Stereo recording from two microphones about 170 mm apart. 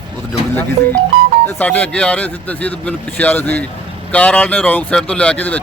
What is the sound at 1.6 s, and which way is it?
Speech, 10° left (ahead or behind).